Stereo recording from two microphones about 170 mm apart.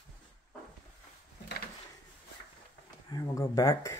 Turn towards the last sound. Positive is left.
turn(degrees=20)  # may be behind; listen again after turning